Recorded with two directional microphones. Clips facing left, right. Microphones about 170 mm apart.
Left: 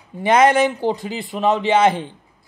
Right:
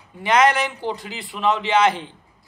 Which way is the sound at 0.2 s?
50° left (ahead or behind).